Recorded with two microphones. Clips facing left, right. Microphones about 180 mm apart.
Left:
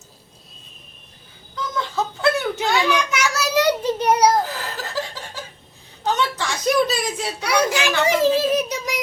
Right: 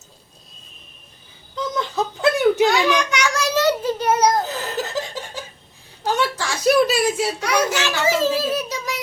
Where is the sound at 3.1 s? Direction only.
5° left (ahead or behind).